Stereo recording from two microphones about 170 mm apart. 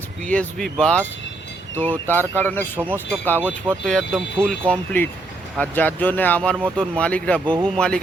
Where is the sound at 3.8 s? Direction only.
5° left (ahead or behind).